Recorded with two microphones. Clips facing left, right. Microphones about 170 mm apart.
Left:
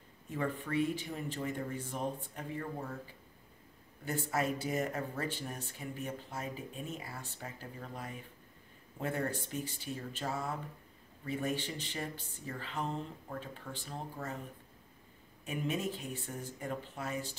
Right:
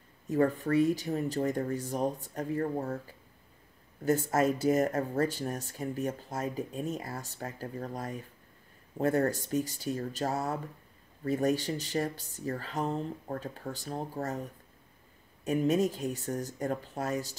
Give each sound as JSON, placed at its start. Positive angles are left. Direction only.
{"t": 0.3, "sound": "speech", "side_deg": -40}
{"t": 4.0, "sound": "speech", "side_deg": -45}
{"t": 15.4, "sound": "speech", "side_deg": -40}